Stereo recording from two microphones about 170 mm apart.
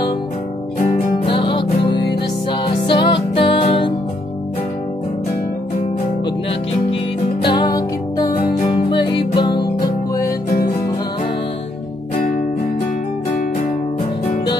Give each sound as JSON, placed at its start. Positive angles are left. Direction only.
{"t": 0.7, "sound": "music", "side_deg": 50}
{"t": 1.2, "sound": "music", "side_deg": 30}
{"t": 7.4, "sound": "music", "side_deg": 25}